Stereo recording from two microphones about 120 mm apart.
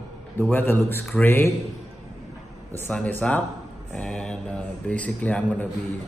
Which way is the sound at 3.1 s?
15° left (ahead or behind).